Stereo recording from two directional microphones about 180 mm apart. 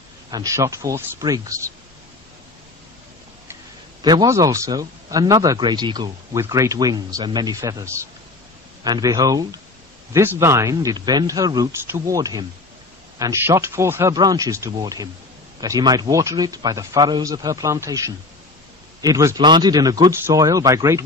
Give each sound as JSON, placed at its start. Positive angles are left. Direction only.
{"t": 0.3, "sound": "speech", "side_deg": -20}
{"t": 4.0, "sound": "speech", "side_deg": -20}